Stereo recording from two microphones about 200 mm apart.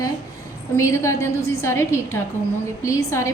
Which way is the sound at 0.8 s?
15° left (ahead or behind).